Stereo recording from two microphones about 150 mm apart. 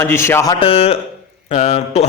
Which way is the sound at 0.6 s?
40° left (ahead or behind).